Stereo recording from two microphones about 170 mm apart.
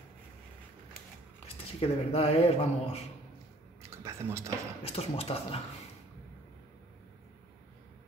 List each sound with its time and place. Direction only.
1.8 s speech: 35° left (ahead or behind)
3.8 s a sound: 15° right (ahead or behind)
4.8 s speech: 35° left (ahead or behind)